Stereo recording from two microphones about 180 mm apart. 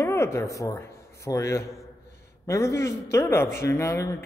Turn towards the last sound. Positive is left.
turn(degrees=15)  # may be behind; listen again after turning